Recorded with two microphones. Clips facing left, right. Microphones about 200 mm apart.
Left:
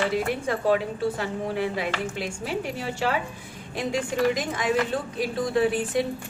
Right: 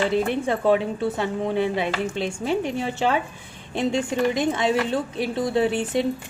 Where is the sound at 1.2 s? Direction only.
25° right (ahead or behind).